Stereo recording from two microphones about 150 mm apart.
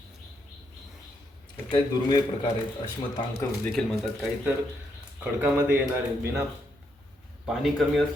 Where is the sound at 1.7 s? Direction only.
30° left (ahead or behind).